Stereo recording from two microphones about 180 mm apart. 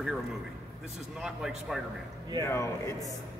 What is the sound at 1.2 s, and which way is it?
Speech, 5° right (ahead or behind).